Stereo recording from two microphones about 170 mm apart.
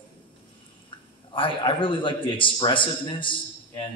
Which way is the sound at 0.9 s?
30° left (ahead or behind).